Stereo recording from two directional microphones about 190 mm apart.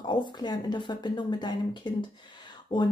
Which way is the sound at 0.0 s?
25° left (ahead or behind).